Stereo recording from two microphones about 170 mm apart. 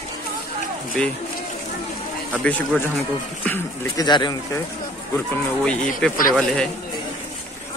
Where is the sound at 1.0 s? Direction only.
5° left (ahead or behind).